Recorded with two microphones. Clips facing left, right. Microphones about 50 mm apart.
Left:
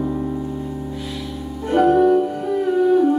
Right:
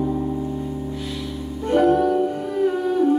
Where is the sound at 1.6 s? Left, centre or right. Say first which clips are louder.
Left 3 dB; centre.